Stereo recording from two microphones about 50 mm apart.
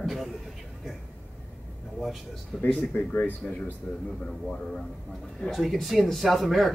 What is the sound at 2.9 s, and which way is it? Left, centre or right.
Speech, left.